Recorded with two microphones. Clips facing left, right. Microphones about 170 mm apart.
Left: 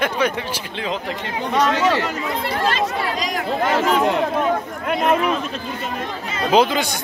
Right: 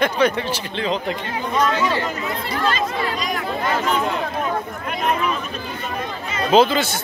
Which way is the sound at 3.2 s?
90° left.